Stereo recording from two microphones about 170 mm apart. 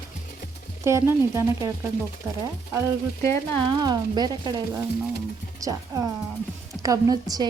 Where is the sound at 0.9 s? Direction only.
15° right (ahead or behind).